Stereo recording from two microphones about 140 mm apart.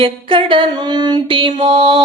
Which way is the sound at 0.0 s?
40° right (ahead or behind).